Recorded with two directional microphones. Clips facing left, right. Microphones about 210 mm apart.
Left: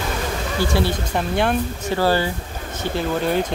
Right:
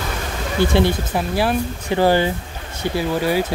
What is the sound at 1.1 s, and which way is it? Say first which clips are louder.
Speech: right 1 dB; 5° right (ahead or behind).